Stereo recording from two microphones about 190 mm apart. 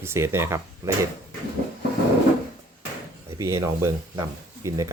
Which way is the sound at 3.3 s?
15° right (ahead or behind).